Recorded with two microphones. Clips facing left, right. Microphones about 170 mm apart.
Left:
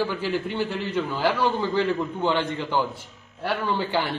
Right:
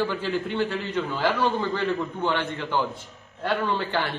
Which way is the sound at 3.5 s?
10° left (ahead or behind).